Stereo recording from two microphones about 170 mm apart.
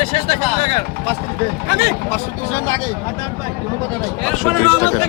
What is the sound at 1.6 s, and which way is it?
Speech, 80° left.